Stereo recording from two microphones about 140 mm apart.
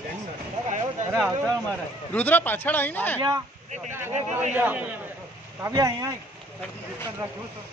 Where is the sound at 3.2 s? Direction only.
25° right (ahead or behind).